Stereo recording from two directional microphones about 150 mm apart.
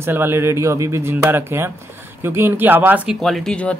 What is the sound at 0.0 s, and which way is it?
Speech, 15° right (ahead or behind).